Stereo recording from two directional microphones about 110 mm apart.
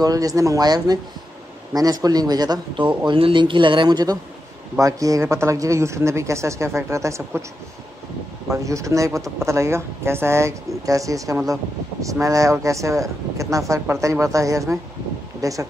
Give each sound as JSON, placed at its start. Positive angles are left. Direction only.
{"t": 0.0, "sound": "speech", "side_deg": -35}
{"t": 3.1, "sound": "speech", "side_deg": -50}
{"t": 8.5, "sound": "speech", "side_deg": -30}